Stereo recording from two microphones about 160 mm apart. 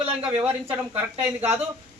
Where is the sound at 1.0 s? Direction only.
15° right (ahead or behind).